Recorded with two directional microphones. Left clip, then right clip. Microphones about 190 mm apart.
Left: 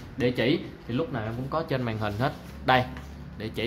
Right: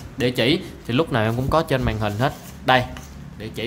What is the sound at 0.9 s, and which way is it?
Speech, 35° right (ahead or behind).